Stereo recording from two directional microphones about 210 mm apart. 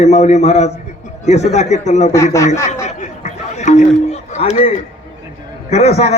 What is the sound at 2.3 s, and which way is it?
Speech, 15° left (ahead or behind).